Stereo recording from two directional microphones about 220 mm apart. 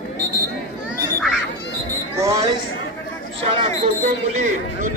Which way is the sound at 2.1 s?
15° right (ahead or behind).